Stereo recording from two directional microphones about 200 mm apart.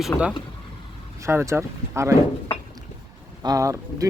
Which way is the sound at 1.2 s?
15° right (ahead or behind).